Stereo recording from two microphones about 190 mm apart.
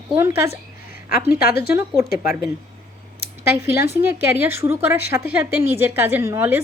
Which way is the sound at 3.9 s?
10° right (ahead or behind).